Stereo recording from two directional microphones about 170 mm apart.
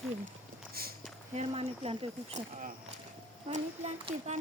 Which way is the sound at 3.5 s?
40° right (ahead or behind).